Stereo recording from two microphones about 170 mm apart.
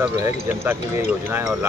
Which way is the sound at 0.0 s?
15° right (ahead or behind).